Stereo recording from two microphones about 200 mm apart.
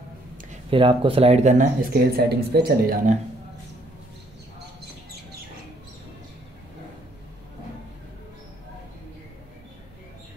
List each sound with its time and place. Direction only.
0.7 s speech: 25° right (ahead or behind); by 3.2 s 50° right (ahead or behind)